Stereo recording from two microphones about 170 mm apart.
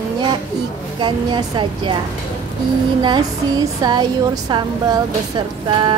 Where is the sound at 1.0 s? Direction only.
25° right (ahead or behind).